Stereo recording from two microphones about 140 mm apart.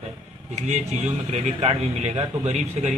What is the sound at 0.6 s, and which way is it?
A man's voice, 55° right (ahead or behind).